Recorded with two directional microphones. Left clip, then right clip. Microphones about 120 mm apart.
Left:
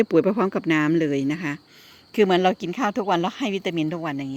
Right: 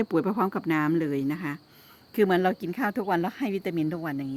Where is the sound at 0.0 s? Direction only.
10° left (ahead or behind).